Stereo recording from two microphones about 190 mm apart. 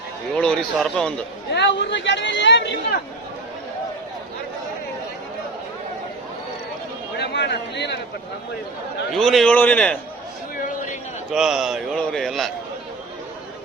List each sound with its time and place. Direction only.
0.3 s a man's voice: 5° left (ahead or behind)
1.5 s speech: 65° left (ahead or behind)
7.2 s speech: 60° left (ahead or behind)
9.1 s a man's voice: centre (ahead or behind)
11.3 s a man's voice: 5° right (ahead or behind)